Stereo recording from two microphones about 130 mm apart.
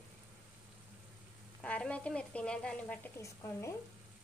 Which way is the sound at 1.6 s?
10° left (ahead or behind).